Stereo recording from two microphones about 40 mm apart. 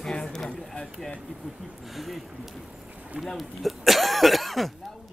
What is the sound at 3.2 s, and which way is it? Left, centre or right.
Speech, centre.